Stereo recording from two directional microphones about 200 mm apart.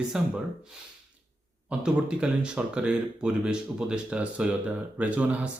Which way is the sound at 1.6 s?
5° right (ahead or behind).